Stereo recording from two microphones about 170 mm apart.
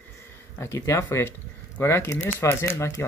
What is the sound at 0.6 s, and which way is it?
Speech, 15° left (ahead or behind).